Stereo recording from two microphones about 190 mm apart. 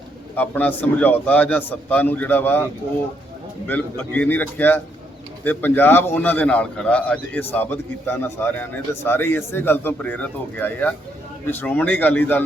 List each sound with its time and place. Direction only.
0.3 s a man's voice: 10° left (ahead or behind)
3.7 s a man's voice: 10° left (ahead or behind)